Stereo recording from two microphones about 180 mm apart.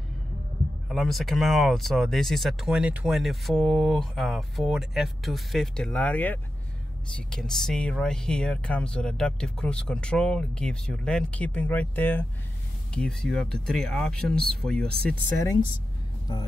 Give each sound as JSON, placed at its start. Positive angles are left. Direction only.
{"t": 0.8, "sound": "speech", "side_deg": 0}
{"t": 15.2, "sound": "speech", "side_deg": 15}